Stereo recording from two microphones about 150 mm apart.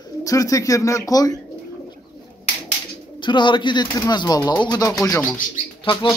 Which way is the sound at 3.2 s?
30° left (ahead or behind).